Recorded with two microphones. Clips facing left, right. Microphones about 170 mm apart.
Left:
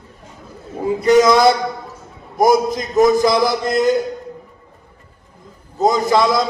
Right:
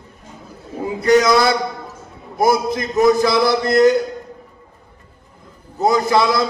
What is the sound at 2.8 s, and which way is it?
Speech, 15° left (ahead or behind).